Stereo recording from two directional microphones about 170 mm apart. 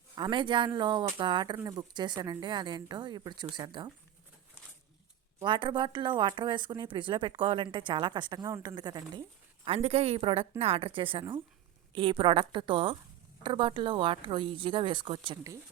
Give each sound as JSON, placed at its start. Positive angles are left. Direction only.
{"t": 0.2, "sound": "speech", "side_deg": -30}
{"t": 5.4, "sound": "speech", "side_deg": -30}
{"t": 9.6, "sound": "a woman's voice", "side_deg": -35}